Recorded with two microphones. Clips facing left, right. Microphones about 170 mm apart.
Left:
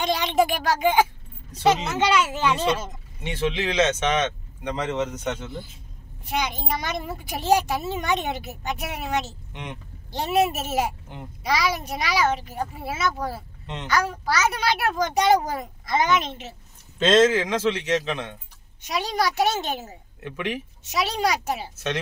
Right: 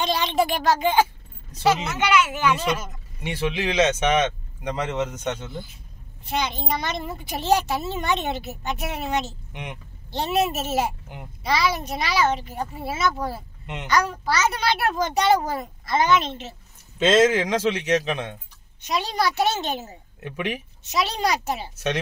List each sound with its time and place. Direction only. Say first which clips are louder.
0.0 s a child's voice: left 1 dB; 15° left (ahead or behind)
1.9 s a child's voice: even; 30° left (ahead or behind)
3.3 s speech: even; 10° right (ahead or behind)
6.2 s a child's voice: right 1 dB; 10° left (ahead or behind)
9.5 s speech: even; 15° right (ahead or behind)
10.1 s a child's voice: left 1 dB; 10° left (ahead or behind)
17.0 s speech: even; 5° right (ahead or behind)
17.3 s speech: right 1 dB; 15° right (ahead or behind)
18.8 s a child's voice: even; 10° left (ahead or behind)
20.2 s speech: even; 15° right (ahead or behind)
20.8 s a child's voice: even; 10° left (ahead or behind)